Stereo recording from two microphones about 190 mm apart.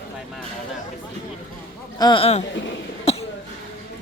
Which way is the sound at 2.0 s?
25° left (ahead or behind).